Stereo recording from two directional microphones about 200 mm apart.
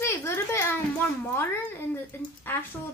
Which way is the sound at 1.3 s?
10° left (ahead or behind).